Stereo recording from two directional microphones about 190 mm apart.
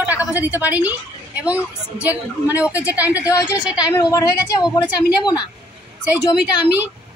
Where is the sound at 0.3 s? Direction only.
10° right (ahead or behind).